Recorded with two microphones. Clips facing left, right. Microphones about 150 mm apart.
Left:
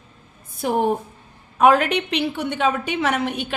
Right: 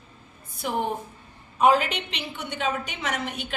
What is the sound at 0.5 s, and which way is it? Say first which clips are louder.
Speech: left 7 dB; 50° left (ahead or behind).